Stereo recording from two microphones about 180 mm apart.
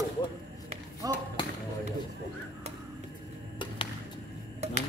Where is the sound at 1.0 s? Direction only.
20° right (ahead or behind).